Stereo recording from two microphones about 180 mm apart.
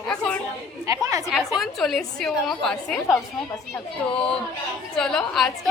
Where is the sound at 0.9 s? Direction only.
20° right (ahead or behind).